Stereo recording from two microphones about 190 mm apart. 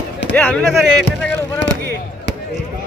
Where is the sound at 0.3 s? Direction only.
5° left (ahead or behind).